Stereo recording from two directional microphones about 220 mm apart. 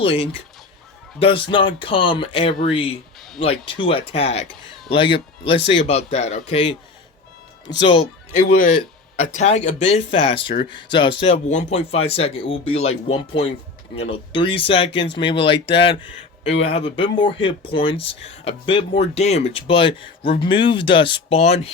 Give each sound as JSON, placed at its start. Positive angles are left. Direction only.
{"t": 0.0, "sound": "speech", "side_deg": 25}
{"t": 8.5, "sound": "speech", "side_deg": 35}